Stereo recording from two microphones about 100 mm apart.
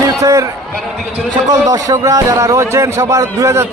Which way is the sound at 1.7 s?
35° right (ahead or behind).